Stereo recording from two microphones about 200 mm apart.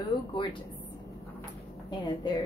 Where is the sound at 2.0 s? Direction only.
20° left (ahead or behind).